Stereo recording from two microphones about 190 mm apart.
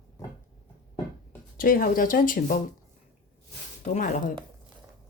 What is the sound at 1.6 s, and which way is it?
Speech, 50° left (ahead or behind).